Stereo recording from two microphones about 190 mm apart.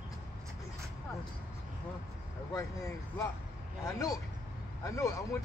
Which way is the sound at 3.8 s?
20° left (ahead or behind).